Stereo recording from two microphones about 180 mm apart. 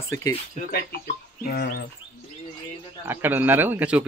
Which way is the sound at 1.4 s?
55° left (ahead or behind).